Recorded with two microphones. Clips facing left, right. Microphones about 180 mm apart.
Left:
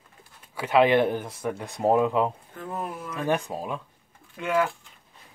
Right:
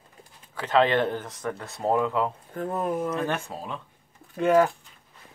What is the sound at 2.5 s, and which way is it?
Speech, 40° right (ahead or behind).